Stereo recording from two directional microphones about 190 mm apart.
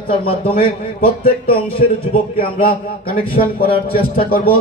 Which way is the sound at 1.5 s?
50° left (ahead or behind).